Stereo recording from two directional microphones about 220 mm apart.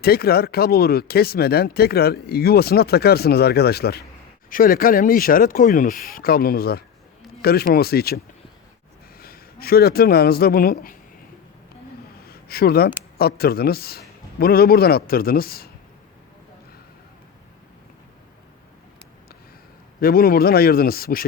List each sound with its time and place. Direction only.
0.0 s speech: 45° left (ahead or behind)
12.2 s a sound: 45° left (ahead or behind)
13.1 s speech: 45° left (ahead or behind)
20.0 s speech: 45° left (ahead or behind)